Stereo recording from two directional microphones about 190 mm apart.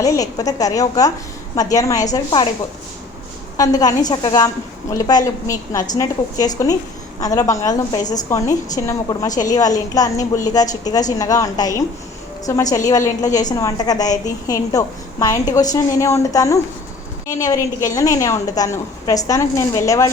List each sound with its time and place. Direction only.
0.0 s a woman's voice: 20° left (ahead or behind)
3.6 s a woman's voice: 20° left (ahead or behind)
9.3 s a woman's voice: 40° left (ahead or behind)
9.6 s a woman's voice: 20° left (ahead or behind)